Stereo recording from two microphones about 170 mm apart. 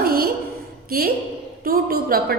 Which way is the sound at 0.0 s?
65° right (ahead or behind).